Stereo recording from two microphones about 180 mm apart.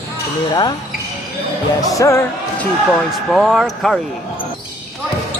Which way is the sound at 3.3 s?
Centre (ahead or behind).